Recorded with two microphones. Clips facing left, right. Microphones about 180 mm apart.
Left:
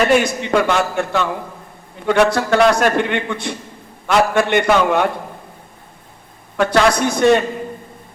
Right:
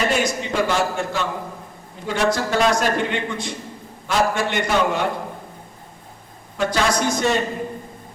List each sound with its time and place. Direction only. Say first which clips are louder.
0.1 s a man's voice: left 7 dB; 65° left (ahead or behind)
6.6 s a man's voice: left 6 dB; 60° left (ahead or behind)